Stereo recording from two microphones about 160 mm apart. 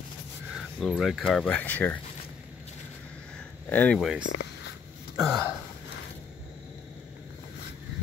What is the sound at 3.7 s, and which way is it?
Speech, 10° left (ahead or behind).